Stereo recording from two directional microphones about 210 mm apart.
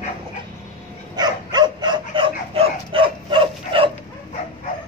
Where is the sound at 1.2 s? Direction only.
20° right (ahead or behind).